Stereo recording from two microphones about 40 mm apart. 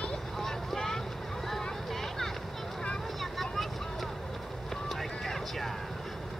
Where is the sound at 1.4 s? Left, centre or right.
Centre.